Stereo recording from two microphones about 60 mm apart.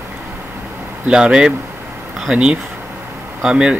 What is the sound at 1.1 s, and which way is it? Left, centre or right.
Speech, centre.